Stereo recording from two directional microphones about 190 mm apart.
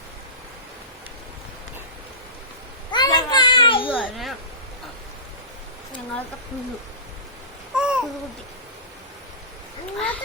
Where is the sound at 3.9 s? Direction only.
Centre (ahead or behind).